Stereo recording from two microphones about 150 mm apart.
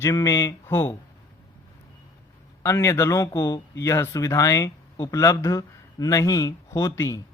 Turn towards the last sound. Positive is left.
turn(degrees=20)  # may be behind; listen again after turning